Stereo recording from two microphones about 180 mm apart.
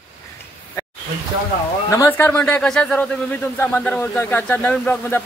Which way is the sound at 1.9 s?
15° left (ahead or behind).